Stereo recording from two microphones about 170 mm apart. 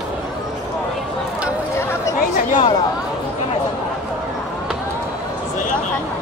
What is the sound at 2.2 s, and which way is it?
Speech, 50° left (ahead or behind).